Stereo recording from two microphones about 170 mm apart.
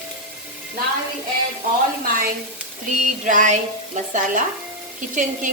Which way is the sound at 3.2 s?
50° right (ahead or behind).